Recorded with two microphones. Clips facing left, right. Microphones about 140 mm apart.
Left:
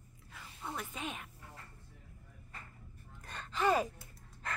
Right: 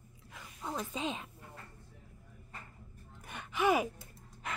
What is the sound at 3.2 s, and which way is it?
Gasp, 15° right (ahead or behind).